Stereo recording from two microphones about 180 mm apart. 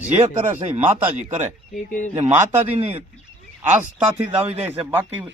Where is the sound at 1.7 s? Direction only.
45° left (ahead or behind).